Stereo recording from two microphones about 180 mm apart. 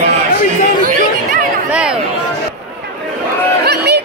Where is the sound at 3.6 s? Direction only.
65° right (ahead or behind).